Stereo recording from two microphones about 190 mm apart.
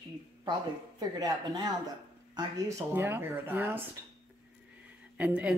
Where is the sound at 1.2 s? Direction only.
20° right (ahead or behind).